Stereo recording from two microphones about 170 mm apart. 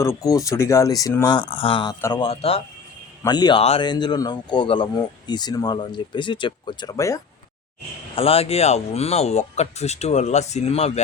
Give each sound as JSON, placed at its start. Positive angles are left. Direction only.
{"t": 0.0, "sound": "speech", "side_deg": 20}
{"t": 3.2, "sound": "speech", "side_deg": 25}
{"t": 8.1, "sound": "speech", "side_deg": 35}